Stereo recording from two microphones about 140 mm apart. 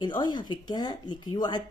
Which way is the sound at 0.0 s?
30° left (ahead or behind).